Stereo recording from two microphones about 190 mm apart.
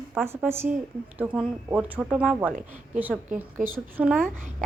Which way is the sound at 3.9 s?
5° right (ahead or behind).